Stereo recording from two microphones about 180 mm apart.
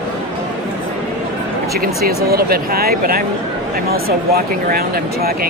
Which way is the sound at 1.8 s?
60° right (ahead or behind).